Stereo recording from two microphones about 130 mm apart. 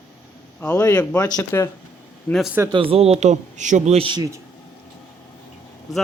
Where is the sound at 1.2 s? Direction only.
30° left (ahead or behind).